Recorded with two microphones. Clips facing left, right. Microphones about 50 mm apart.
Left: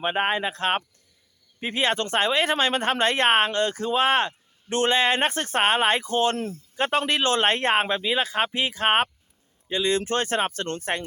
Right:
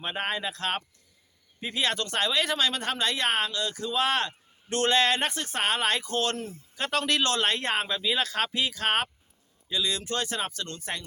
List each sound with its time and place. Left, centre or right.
0.0 s speech: left